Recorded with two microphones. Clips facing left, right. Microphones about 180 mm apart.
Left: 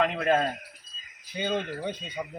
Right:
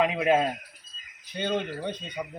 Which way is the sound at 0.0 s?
10° right (ahead or behind).